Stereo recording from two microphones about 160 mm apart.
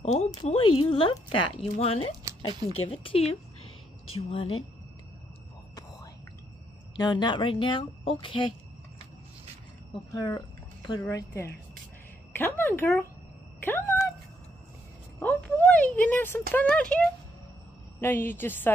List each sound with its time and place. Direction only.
0.0 s a sound: 45° left (ahead or behind)
0.3 s speech: 35° left (ahead or behind)
7.0 s speech: 30° left (ahead or behind)
11.0 s a woman's voice: 20° left (ahead or behind)
15.1 s a woman's voice: 10° left (ahead or behind)